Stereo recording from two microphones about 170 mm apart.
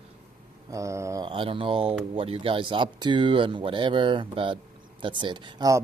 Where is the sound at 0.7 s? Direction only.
20° right (ahead or behind).